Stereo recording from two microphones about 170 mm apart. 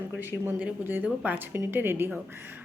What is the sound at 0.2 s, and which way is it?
A woman's voice, 10° right (ahead or behind).